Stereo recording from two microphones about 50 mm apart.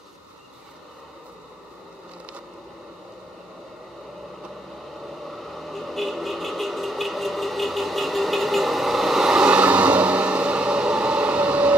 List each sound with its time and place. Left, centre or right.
5.0 s vehicle: centre
9.4 s vehicle: right